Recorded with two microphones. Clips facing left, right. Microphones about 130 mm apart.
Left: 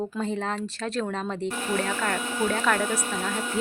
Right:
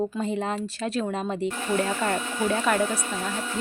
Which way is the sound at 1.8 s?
20° right (ahead or behind).